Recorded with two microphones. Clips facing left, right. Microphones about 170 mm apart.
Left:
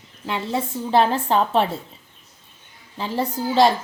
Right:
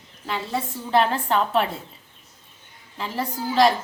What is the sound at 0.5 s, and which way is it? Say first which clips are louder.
A woman's voice: left 2 dB; 25° left (ahead or behind).